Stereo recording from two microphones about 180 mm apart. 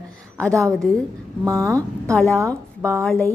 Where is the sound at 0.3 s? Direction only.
5° left (ahead or behind).